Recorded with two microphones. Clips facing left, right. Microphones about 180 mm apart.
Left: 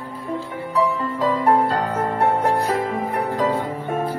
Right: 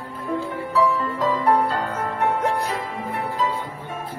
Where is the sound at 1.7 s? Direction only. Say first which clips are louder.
Left 4 dB; 35° left (ahead or behind).